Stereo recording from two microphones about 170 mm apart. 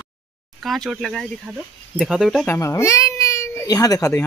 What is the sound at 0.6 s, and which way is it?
Speech, centre (ahead or behind).